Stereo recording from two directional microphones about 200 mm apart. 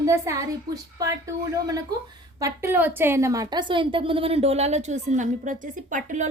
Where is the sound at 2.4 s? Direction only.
15° right (ahead or behind).